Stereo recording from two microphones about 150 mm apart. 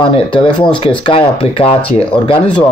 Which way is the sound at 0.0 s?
35° left (ahead or behind).